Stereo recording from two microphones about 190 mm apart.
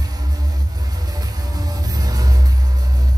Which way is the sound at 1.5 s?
20° right (ahead or behind).